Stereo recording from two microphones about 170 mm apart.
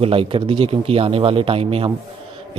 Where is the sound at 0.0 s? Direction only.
35° right (ahead or behind).